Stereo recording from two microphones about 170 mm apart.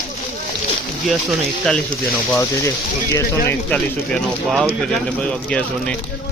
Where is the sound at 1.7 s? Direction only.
5° left (ahead or behind).